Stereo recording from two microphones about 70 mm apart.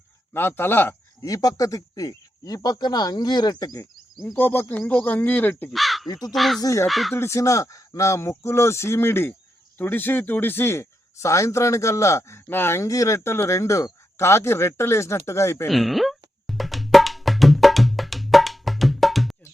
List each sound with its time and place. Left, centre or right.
0.3 s speech: left
1.2 s speech: left
4.4 s speech: left
5.7 s speech: centre
6.1 s speech: left
6.3 s speech: centre
6.6 s speech: left
6.8 s speech: centre
7.3 s speech: left
12.5 s speech: left
12.8 s speech: left
15.7 s music: centre